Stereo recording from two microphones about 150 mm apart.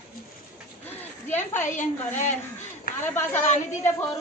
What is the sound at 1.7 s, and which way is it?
Speech, 55° left (ahead or behind).